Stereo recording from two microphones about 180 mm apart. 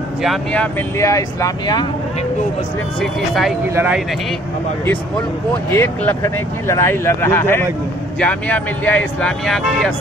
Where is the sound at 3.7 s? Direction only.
10° right (ahead or behind).